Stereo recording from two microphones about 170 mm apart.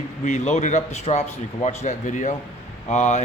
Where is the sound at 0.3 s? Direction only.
45° left (ahead or behind).